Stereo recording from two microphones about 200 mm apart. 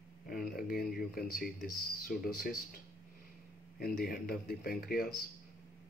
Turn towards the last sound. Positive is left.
turn(degrees=45)  # may be behind; listen again after turning